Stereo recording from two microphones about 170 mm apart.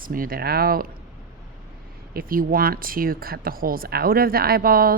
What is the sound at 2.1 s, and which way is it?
Speech, 60° right (ahead or behind).